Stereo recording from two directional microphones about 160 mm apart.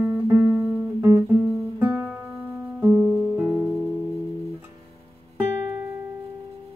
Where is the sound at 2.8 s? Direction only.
15° right (ahead or behind).